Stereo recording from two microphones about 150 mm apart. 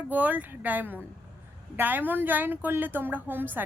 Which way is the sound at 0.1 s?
10° right (ahead or behind).